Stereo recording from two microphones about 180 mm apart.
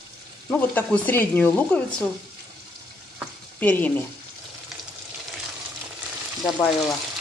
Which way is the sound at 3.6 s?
10° left (ahead or behind).